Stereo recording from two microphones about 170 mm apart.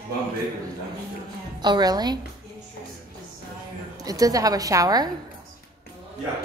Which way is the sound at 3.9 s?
20° right (ahead or behind).